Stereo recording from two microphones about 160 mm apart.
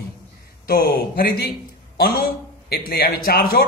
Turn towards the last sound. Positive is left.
turn(degrees=70)  # may be behind; listen again after turning